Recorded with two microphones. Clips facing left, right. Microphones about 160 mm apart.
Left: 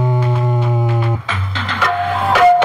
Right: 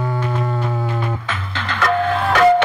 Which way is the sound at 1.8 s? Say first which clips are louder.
Even; 10° left (ahead or behind).